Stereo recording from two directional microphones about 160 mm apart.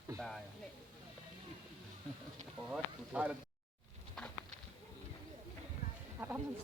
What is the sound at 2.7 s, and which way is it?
Speech, 10° right (ahead or behind).